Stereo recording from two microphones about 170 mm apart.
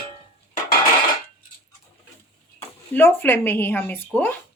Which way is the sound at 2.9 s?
10° left (ahead or behind).